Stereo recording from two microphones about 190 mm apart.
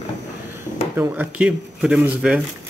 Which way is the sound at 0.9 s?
10° right (ahead or behind).